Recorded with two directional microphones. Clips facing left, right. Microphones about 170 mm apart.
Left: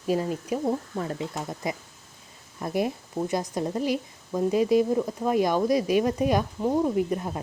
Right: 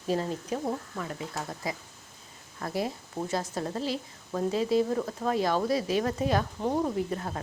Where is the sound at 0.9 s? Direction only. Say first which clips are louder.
Left 6 dB; 30° left (ahead or behind).